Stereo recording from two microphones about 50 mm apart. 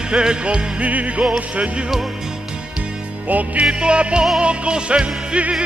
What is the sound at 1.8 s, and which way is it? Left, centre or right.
Music, centre.